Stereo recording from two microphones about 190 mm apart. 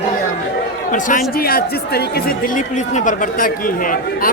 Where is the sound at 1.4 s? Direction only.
55° left (ahead or behind).